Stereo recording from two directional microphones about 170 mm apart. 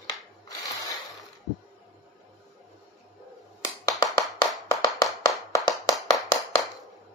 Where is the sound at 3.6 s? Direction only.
20° left (ahead or behind).